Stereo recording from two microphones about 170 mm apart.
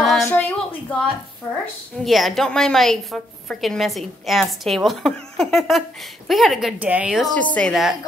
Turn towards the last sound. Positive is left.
turn(degrees=0)  # may be behind; listen again after turning